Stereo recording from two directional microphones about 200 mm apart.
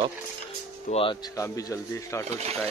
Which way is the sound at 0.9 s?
35° left (ahead or behind).